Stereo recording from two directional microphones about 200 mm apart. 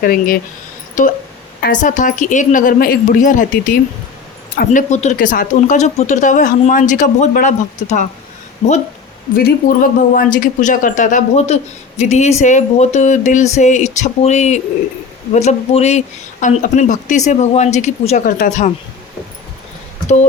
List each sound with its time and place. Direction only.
0.0 s speech: 45° left (ahead or behind)
9.3 s speech: 45° left (ahead or behind)